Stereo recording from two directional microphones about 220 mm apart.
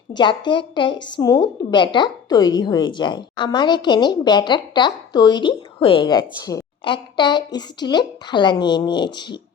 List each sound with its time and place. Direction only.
0.1 s a woman's voice: 20° left (ahead or behind)